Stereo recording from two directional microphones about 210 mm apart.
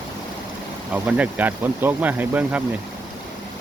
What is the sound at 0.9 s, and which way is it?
Speech, 5° right (ahead or behind).